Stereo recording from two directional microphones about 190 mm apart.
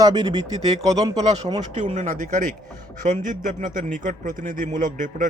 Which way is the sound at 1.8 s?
40° right (ahead or behind).